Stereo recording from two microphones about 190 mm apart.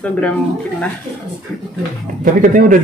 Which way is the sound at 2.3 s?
45° right (ahead or behind).